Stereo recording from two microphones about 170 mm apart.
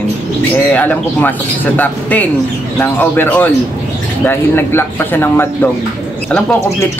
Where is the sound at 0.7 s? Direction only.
10° left (ahead or behind).